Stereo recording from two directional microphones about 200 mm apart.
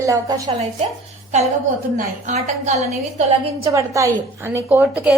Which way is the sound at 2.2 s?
35° right (ahead or behind).